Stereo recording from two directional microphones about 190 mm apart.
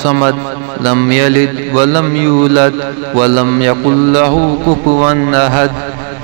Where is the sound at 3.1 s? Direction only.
35° right (ahead or behind).